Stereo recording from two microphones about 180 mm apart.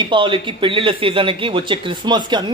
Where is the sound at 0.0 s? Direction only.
25° right (ahead or behind).